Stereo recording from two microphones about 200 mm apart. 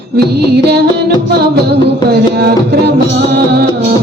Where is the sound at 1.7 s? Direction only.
55° right (ahead or behind).